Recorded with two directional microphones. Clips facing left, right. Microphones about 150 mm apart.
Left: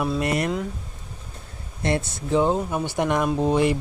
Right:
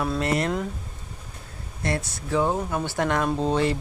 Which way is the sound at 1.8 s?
25° left (ahead or behind).